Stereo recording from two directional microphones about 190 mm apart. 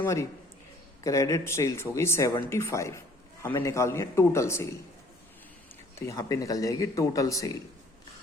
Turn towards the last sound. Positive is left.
turn(degrees=15)  # may be behind; listen again after turning